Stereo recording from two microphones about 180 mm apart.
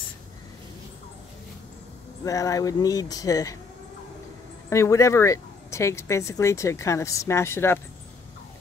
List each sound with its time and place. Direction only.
2.2 s speech: 20° left (ahead or behind)
4.6 s speech: 15° left (ahead or behind)